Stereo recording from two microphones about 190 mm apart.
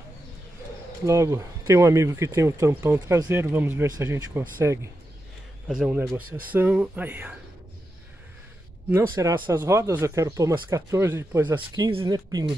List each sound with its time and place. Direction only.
1.0 s speech: 15° right (ahead or behind)
8.9 s speech: 15° right (ahead or behind)